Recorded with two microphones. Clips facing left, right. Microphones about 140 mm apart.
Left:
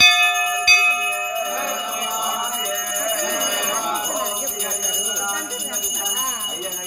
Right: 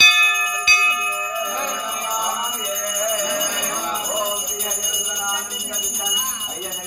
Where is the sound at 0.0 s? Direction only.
50° left (ahead or behind).